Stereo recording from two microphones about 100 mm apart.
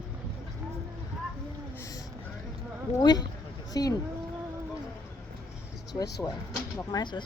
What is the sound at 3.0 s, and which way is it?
Speech, 45° left (ahead or behind).